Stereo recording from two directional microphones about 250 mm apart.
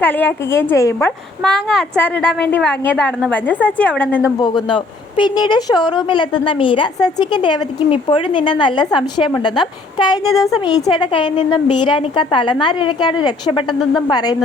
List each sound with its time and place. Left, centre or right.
0.0 s a woman's voice: centre
4.4 s a woman's voice: centre